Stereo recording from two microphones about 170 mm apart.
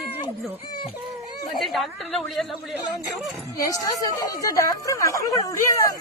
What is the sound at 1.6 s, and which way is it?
Speech, centre (ahead or behind).